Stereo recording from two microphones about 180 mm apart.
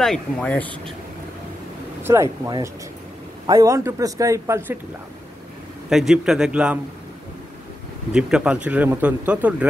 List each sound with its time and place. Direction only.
0.0 s a man's voice: 5° left (ahead or behind)
2.0 s a man's voice: 15° right (ahead or behind)
5.9 s a man's voice: 5° right (ahead or behind)
8.1 s a man's voice: 5° right (ahead or behind)